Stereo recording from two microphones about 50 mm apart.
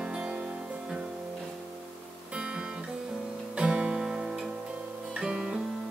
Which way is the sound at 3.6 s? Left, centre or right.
Centre.